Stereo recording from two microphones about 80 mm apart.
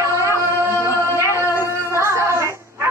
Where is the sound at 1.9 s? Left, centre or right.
Right.